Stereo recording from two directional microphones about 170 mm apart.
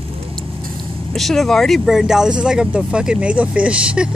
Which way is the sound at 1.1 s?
Centre (ahead or behind).